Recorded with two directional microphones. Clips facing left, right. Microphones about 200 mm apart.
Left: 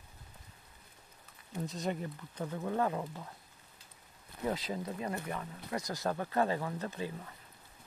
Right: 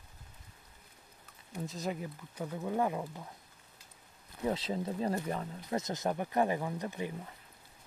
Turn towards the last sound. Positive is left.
turn(degrees=-15)  # may be behind; listen again after turning